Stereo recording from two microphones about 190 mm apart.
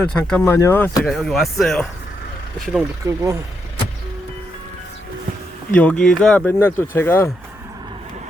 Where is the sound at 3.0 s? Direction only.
15° right (ahead or behind).